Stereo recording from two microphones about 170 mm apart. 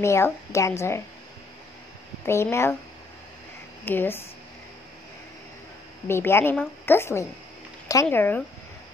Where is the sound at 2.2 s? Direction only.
15° left (ahead or behind).